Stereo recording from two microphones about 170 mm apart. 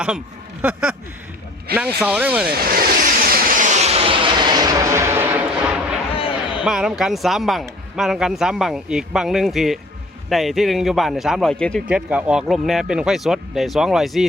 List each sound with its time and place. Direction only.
0.6 s speech: 5° right (ahead or behind)
2.0 s speech: 10° right (ahead or behind)
2.6 s vehicle: 60° right (ahead or behind); by 5.7 s 10° right (ahead or behind)
6.1 s a sound: 30° left (ahead or behind)
6.7 s speech: 5° right (ahead or behind)